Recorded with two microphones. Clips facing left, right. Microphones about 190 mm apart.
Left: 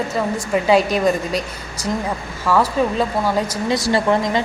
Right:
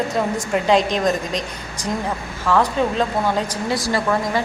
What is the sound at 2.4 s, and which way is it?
Speech, 10° left (ahead or behind).